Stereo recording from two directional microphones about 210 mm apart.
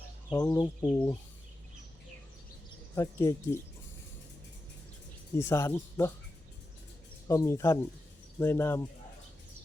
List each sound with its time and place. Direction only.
0.3 s speech: 15° left (ahead or behind)
2.9 s speech: 15° left (ahead or behind)
5.4 s speech: 15° left (ahead or behind)
7.3 s speech: 15° left (ahead or behind)